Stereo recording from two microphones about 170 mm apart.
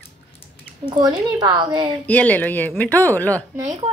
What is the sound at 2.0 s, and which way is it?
A woman's voice, 10° left (ahead or behind).